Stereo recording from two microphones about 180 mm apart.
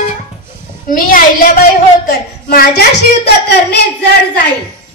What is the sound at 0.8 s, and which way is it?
A woman's voice, 50° left (ahead or behind).